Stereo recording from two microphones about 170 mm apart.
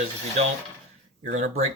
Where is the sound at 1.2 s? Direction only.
50° right (ahead or behind).